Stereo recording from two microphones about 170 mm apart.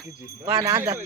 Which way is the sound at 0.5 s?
20° right (ahead or behind).